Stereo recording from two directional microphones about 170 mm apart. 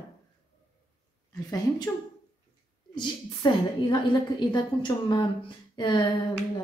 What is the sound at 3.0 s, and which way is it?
A woman's voice, 25° left (ahead or behind).